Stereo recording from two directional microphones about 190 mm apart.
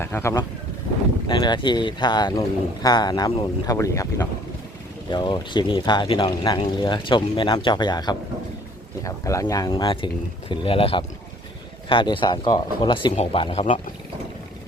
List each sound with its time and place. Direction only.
0.0 s speech: 15° left (ahead or behind); by 13.7 s 30° left (ahead or behind)